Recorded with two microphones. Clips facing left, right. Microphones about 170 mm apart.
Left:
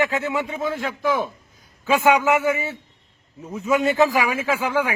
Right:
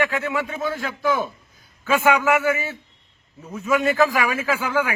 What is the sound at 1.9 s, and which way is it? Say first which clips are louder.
Speech: left 1 dB; 20° left (ahead or behind).